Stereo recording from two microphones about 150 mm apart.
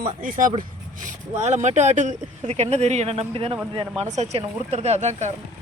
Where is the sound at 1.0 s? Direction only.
50° right (ahead or behind).